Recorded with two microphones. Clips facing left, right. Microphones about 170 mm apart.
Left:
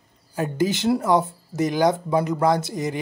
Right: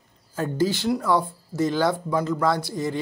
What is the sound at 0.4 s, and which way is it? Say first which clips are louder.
Speech: left 1 dB; 20° left (ahead or behind).